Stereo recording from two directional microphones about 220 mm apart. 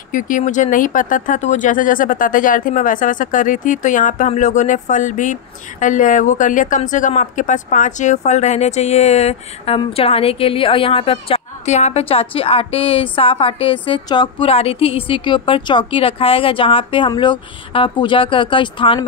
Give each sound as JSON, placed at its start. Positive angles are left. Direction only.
{"t": 0.1, "sound": "speech", "side_deg": 35}